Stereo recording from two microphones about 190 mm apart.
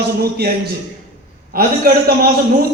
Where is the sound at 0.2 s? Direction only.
55° right (ahead or behind).